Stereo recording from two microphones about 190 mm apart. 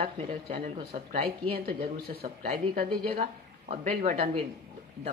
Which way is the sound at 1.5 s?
55° right (ahead or behind).